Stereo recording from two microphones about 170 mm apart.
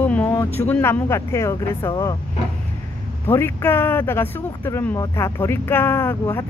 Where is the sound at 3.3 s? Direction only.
15° left (ahead or behind).